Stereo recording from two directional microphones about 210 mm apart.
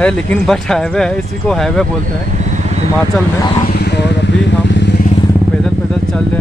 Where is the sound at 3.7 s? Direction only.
50° left (ahead or behind).